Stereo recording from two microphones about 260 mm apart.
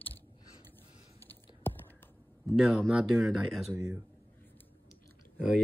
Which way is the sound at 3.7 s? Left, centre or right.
Centre.